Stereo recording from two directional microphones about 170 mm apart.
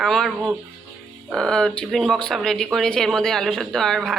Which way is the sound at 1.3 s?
5° left (ahead or behind).